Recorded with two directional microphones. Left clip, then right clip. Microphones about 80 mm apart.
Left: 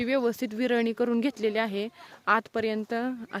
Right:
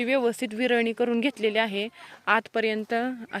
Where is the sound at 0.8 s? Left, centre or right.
Left.